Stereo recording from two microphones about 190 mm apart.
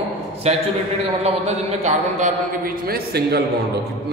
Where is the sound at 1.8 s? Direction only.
40° right (ahead or behind).